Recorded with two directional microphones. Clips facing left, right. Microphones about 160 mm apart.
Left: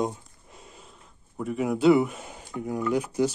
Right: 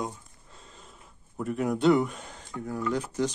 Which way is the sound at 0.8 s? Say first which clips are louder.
Even; centre (ahead or behind).